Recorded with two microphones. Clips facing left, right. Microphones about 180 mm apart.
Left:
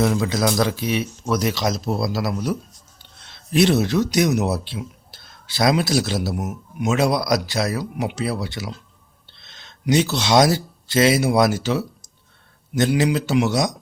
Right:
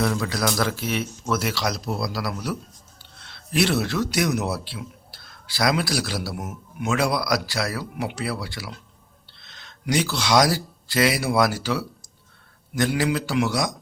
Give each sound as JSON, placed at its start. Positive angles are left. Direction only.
{"t": 0.0, "sound": "speech", "side_deg": 20}